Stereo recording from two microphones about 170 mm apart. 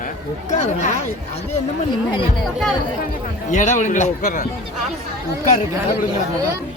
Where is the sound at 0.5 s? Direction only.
40° left (ahead or behind).